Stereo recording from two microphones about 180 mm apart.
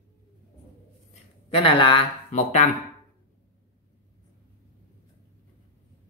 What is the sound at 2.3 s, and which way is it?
Speech, 40° left (ahead or behind).